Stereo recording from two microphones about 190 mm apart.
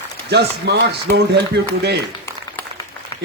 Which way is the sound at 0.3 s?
60° right (ahead or behind).